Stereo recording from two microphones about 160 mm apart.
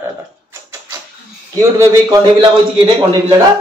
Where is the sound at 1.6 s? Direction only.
20° right (ahead or behind).